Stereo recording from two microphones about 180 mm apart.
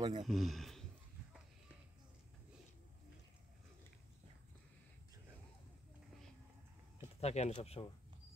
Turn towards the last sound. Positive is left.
turn(degrees=35)  # may be behind; listen again after turning